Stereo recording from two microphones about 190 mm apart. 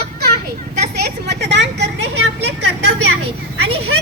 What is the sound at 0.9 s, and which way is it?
Vehicle, 60° right (ahead or behind).